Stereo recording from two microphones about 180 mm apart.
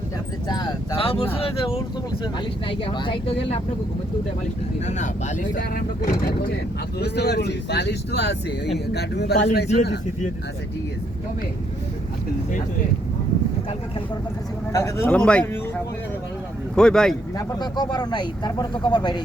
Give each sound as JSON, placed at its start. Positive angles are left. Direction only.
{"t": 0.4, "sound": "speech", "side_deg": 25}
{"t": 4.9, "sound": "speech", "side_deg": 40}
{"t": 7.0, "sound": "speech", "side_deg": 65}
{"t": 14.7, "sound": "speech", "side_deg": 15}
{"t": 16.7, "sound": "speech", "side_deg": 5}
{"t": 17.3, "sound": "speech", "side_deg": 25}